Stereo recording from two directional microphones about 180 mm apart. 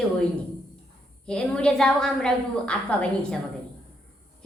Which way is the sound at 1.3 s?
5° left (ahead or behind).